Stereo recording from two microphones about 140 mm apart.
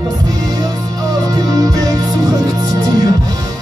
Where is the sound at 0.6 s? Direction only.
25° right (ahead or behind).